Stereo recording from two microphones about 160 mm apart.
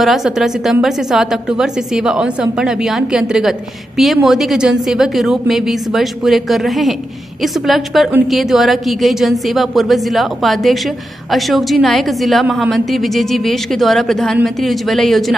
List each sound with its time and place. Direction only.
0.0 s a woman's voice: centre (ahead or behind)